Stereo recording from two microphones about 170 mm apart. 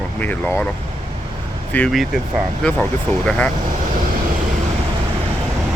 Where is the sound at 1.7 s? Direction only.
5° left (ahead or behind).